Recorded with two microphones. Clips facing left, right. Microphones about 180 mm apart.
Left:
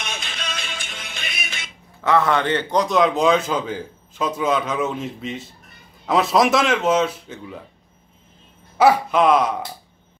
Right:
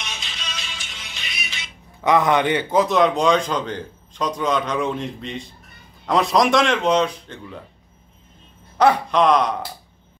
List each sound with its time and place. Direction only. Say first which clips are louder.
0.0 s music: left 4 dB; 55° left (ahead or behind)
2.0 s a man's voice: right 1 dB; 15° right (ahead or behind); by 7.5 s 5° left (ahead or behind)
8.7 s a man's voice: left 1 dB; 5° left (ahead or behind)